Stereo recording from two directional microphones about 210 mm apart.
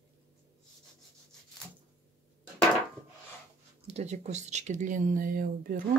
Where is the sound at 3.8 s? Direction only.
30° right (ahead or behind).